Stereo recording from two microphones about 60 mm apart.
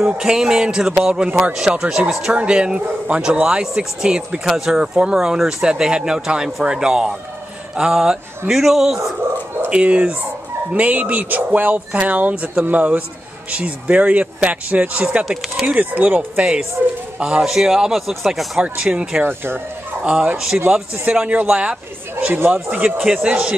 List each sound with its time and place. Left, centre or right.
0.2 s speech: centre
9.7 s speech: centre
15.2 s speech: centre
15.6 s speech: right
17.4 s speech: centre
18.6 s speech: centre
19.2 s speech: right
20.5 s speech: centre
22.2 s speech: right
22.5 s speech: right